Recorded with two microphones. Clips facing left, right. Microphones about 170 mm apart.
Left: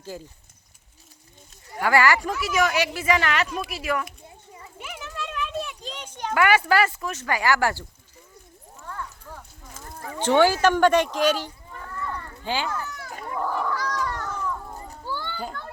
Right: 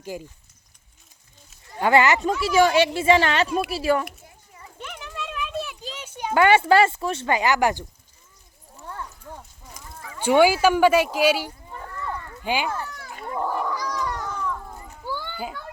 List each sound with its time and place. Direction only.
0.1 s speech: 15° right (ahead or behind)
1.8 s speech: 20° right (ahead or behind)
4.8 s a sound: 5° left (ahead or behind)
6.3 s speech: 25° right (ahead or behind)
8.8 s horse: 25° right (ahead or behind)
10.2 s speech: 10° right (ahead or behind)
12.7 s children playing: 30° right (ahead or behind)
13.5 s cat: 10° right (ahead or behind)
15.0 s children playing: 10° right (ahead or behind)